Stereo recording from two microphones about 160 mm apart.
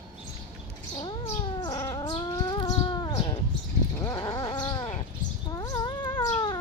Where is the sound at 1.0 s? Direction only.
30° left (ahead or behind).